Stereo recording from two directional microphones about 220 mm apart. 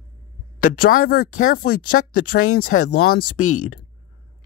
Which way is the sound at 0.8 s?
40° left (ahead or behind).